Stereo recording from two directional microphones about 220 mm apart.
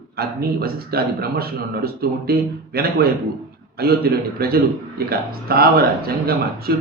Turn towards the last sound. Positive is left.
turn(degrees=-45)  # may be behind; listen again after turning